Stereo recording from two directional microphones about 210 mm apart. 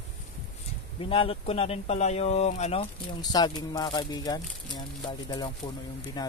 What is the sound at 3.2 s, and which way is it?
Speech, 20° left (ahead or behind).